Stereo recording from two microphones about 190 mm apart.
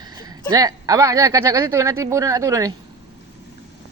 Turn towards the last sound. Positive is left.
turn(degrees=-15)  # may be behind; listen again after turning